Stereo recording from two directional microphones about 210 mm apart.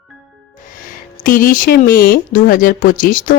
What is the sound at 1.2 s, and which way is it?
Speech, 40° left (ahead or behind).